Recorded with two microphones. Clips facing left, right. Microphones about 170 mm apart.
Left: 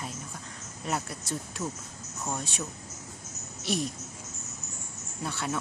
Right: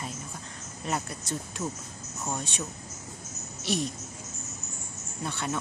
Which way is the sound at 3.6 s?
Centre (ahead or behind).